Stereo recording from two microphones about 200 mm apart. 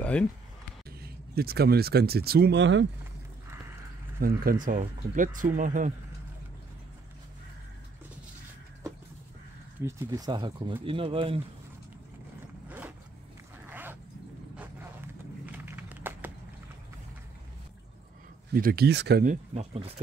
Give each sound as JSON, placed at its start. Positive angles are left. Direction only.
{"t": 0.0, "sound": "speech", "side_deg": 5}
{"t": 1.0, "sound": "speech", "side_deg": -50}
{"t": 4.2, "sound": "speech", "side_deg": -50}
{"t": 9.8, "sound": "speech", "side_deg": -15}
{"t": 12.6, "sound": "vehicle", "side_deg": -10}
{"t": 13.7, "sound": "dog", "side_deg": -10}
{"t": 15.4, "sound": "a sound", "side_deg": -10}
{"t": 18.5, "sound": "speech", "side_deg": -45}
{"t": 19.2, "sound": "speech", "side_deg": -30}